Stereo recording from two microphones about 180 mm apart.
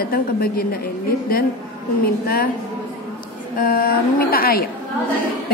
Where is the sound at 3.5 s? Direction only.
55° left (ahead or behind).